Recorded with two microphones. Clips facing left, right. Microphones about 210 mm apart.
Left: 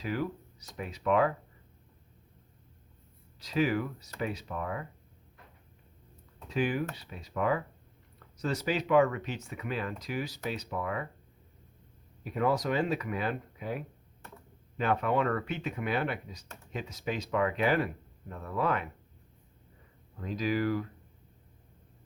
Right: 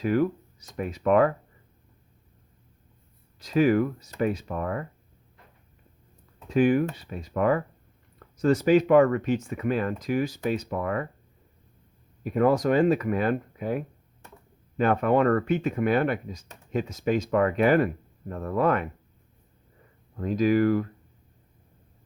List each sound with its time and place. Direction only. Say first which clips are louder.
0.0 s speech: right 10 dB; 50° right (ahead or behind)
3.4 s speech: right 8 dB; 50° right (ahead or behind)
6.5 s speech: right 9 dB; 50° right (ahead or behind)
12.2 s speech: right 7 dB; 50° right (ahead or behind)
20.1 s speech: right 9 dB; 50° right (ahead or behind)